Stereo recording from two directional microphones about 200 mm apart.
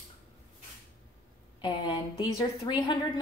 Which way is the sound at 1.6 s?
25° left (ahead or behind).